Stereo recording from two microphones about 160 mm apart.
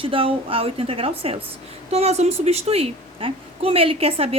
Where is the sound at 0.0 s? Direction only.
35° right (ahead or behind).